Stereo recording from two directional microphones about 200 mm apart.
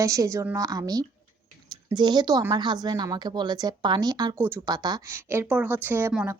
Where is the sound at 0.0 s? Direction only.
15° right (ahead or behind).